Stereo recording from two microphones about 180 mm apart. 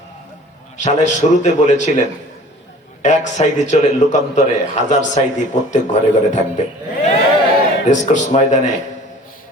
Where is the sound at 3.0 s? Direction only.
40° left (ahead or behind).